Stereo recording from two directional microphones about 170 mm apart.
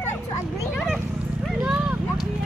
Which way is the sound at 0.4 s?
Centre (ahead or behind).